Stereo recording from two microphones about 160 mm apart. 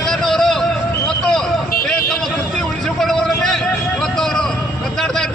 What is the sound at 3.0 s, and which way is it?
Speech, centre (ahead or behind).